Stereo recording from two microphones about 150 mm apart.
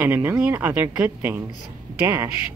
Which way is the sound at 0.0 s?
10° right (ahead or behind).